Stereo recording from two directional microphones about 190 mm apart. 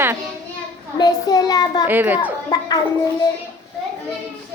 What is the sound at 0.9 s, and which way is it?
Speech, 20° left (ahead or behind).